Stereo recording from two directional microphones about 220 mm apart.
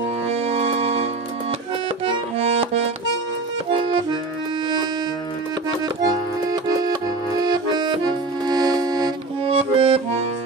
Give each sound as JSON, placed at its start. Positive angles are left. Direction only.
{"t": 0.3, "sound": "music", "side_deg": -30}
{"t": 2.0, "sound": "tabla", "side_deg": -25}
{"t": 3.7, "sound": "accordion", "side_deg": -20}
{"t": 6.0, "sound": "accordion", "side_deg": -15}